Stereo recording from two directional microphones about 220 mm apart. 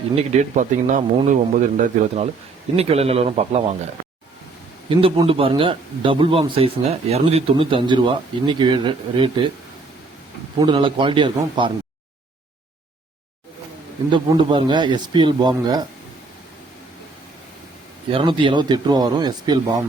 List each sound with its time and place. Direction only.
0.2 s a man's voice: 35° right (ahead or behind)
4.9 s a man's voice: 25° right (ahead or behind)
10.6 s a man's voice: 20° right (ahead or behind)
14.1 s a man's voice: 20° right (ahead or behind)
18.1 s a man's voice: 20° right (ahead or behind)